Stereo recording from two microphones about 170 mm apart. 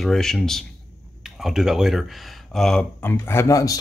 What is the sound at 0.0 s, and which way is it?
Speech, centre (ahead or behind).